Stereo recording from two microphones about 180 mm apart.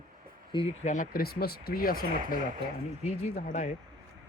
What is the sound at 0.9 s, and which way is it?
Speech, 50° left (ahead or behind).